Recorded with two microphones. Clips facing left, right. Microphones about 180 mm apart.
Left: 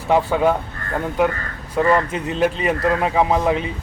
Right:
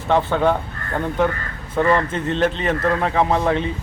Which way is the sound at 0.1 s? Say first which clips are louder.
Left 1 dB; 10° left (ahead or behind).